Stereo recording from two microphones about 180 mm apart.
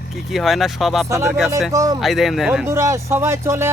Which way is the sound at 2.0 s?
Centre (ahead or behind).